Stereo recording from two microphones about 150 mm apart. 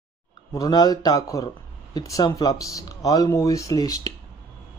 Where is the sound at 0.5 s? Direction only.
25° left (ahead or behind).